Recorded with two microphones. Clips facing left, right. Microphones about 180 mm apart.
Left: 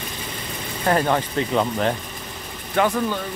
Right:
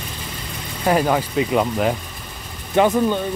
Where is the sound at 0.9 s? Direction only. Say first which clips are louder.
Right 2 dB; 10° right (ahead or behind).